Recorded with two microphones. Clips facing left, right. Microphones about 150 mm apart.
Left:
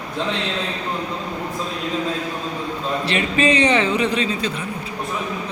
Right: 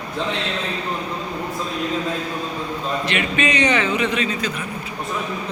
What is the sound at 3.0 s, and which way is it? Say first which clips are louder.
A man's voice: left 4 dB; 35° left (ahead or behind).